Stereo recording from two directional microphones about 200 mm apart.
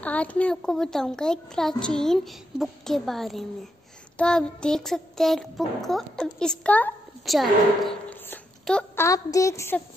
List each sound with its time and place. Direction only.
0.0 s a child's voice: 5° left (ahead or behind)